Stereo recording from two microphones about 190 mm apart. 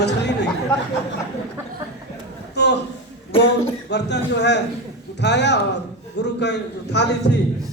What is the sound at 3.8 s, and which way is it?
A man's voice, 65° left (ahead or behind).